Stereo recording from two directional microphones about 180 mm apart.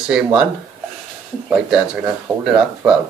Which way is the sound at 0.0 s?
5° right (ahead or behind).